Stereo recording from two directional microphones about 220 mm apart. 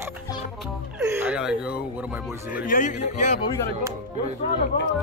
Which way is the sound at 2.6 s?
35° left (ahead or behind).